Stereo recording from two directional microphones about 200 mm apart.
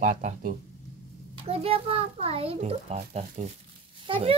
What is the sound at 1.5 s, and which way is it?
A child's voice, 30° right (ahead or behind).